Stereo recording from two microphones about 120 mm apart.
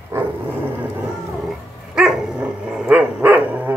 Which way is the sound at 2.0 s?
5° right (ahead or behind).